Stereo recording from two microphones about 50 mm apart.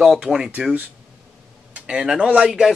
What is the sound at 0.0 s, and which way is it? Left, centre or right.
Speech, centre.